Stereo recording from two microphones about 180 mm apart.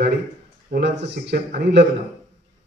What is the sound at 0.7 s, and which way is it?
A man's voice, 70° right (ahead or behind).